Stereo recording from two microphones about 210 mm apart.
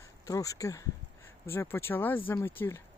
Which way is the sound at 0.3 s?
15° left (ahead or behind).